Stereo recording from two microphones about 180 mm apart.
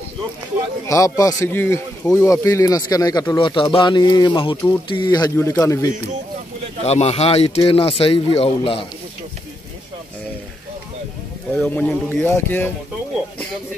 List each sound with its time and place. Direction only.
0.8 s speech: 20° left (ahead or behind)
6.8 s speech: 35° left (ahead or behind)
11.5 s speech: 5° left (ahead or behind)